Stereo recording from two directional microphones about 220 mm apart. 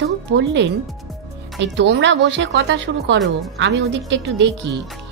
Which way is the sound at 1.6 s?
55° right (ahead or behind).